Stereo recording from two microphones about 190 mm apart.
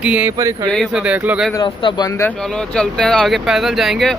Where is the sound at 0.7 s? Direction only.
Centre (ahead or behind).